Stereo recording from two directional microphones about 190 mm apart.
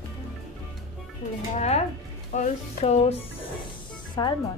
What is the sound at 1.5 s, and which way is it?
Speech, 35° left (ahead or behind).